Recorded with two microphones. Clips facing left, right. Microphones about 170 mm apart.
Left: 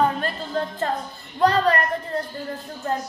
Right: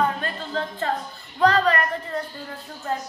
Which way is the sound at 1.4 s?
35° left (ahead or behind).